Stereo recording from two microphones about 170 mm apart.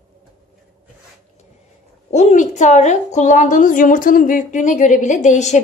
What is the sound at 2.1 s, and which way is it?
A woman's voice, 45° left (ahead or behind).